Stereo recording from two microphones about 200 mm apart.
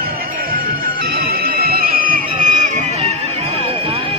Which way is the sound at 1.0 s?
50° right (ahead or behind).